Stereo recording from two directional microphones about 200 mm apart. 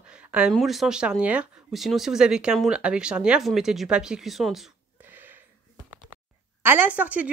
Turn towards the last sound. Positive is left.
turn(degrees=-5)  # may be behind; listen again after turning